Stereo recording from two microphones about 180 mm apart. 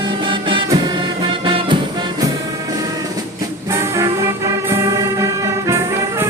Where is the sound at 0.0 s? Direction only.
25° right (ahead or behind).